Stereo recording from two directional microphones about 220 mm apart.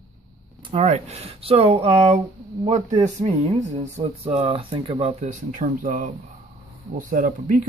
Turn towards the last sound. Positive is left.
turn(degrees=-35)  # may be behind; listen again after turning